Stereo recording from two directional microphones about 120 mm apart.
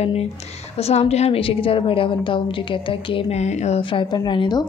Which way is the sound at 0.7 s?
60° left (ahead or behind).